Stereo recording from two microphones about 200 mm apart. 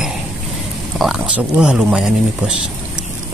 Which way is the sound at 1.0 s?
5° right (ahead or behind).